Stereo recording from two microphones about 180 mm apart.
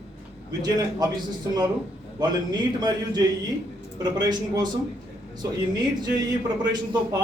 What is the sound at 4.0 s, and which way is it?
Speech, 25° right (ahead or behind).